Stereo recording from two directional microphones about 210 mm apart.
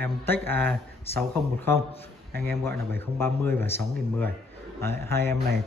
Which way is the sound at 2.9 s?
10° left (ahead or behind).